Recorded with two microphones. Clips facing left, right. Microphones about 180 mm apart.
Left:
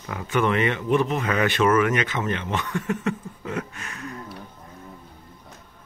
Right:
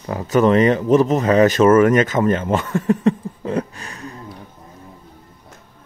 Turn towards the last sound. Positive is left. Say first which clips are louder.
# right 2 dB
turn(degrees=-30)  # may be behind; listen again after turning